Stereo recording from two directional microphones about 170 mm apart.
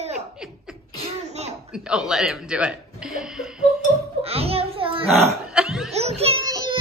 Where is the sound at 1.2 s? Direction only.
40° right (ahead or behind).